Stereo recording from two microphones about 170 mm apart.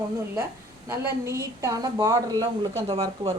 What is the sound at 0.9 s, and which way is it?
A woman's voice, 15° right (ahead or behind).